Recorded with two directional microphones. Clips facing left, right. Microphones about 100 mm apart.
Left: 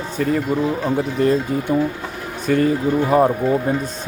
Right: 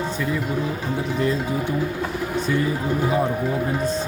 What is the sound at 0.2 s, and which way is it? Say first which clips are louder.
Speech: left 10 dB; 55° left (ahead or behind).